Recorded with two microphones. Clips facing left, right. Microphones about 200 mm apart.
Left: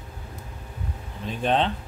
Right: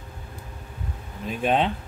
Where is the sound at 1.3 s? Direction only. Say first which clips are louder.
Right 1 dB; 10° right (ahead or behind).